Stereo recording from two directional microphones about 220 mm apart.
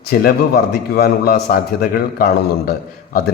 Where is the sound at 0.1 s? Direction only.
45° left (ahead or behind).